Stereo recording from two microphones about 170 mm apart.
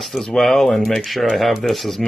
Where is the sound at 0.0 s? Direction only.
Centre (ahead or behind).